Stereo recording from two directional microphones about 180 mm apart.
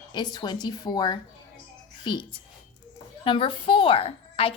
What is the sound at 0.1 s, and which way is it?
A woman's voice, 25° left (ahead or behind).